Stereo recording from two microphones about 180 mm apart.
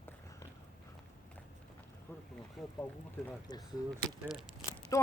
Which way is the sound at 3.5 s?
20° left (ahead or behind).